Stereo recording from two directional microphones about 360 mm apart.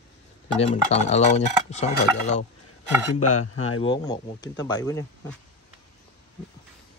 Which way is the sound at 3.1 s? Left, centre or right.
Left.